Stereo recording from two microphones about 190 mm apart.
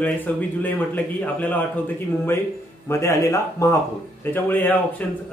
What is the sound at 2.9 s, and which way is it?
A man's voice, 15° left (ahead or behind).